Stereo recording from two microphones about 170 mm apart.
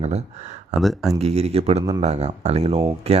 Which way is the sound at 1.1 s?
40° right (ahead or behind).